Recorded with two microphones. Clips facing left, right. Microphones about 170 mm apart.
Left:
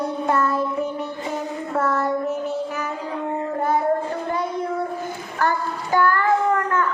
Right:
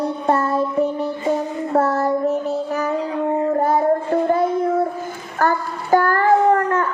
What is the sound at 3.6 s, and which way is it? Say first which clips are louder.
Music: even; 40° right (ahead or behind).